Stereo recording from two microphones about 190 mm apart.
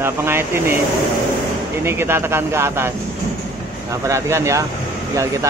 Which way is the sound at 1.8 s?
10° right (ahead or behind).